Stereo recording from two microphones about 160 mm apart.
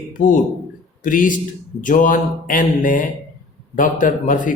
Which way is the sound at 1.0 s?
55° left (ahead or behind).